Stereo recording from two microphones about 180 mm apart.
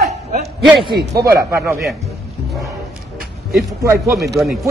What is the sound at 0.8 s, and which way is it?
Speech, 20° right (ahead or behind).